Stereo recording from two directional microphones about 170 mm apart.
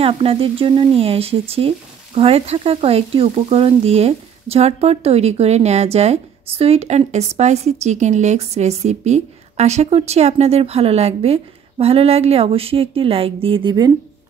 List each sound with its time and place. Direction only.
0.0 s a woman's voice: 35° right (ahead or behind)